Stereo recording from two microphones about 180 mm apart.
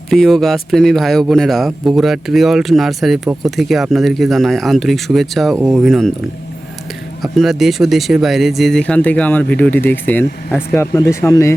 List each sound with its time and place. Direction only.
0.1 s speech: centre (ahead or behind)
7.2 s speech: centre (ahead or behind); by 11.5 s 15° left (ahead or behind)